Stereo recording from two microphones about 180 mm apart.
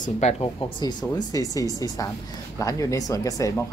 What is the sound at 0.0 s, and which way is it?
Speech, 40° left (ahead or behind).